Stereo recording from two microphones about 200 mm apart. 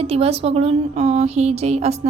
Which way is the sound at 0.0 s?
30° right (ahead or behind).